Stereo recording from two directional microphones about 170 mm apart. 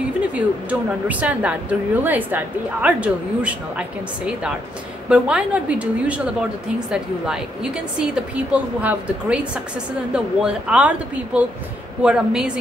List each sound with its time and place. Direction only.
0.7 s a woman's voice: 10° right (ahead or behind)
5.1 s a woman's voice: 5° right (ahead or behind)